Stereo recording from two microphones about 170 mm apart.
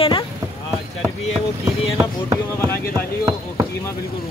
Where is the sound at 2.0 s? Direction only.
20° right (ahead or behind).